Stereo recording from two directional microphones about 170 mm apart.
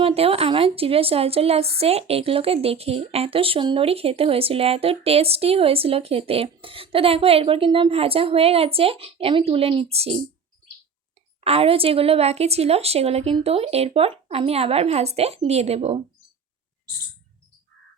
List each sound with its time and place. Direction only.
0.0 s a woman's voice: 35° right (ahead or behind)
11.4 s a woman's voice: 35° right (ahead or behind)